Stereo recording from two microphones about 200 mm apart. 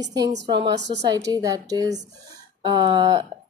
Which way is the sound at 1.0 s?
20° right (ahead or behind).